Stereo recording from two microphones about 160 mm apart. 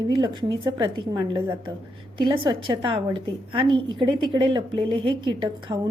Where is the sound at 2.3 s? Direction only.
25° right (ahead or behind).